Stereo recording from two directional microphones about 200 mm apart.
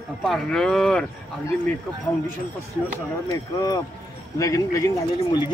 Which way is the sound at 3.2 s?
20° left (ahead or behind).